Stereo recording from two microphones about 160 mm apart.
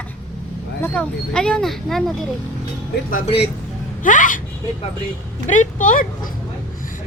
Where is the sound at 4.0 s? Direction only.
55° left (ahead or behind).